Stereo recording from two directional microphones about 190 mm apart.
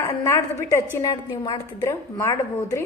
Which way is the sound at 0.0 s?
15° left (ahead or behind).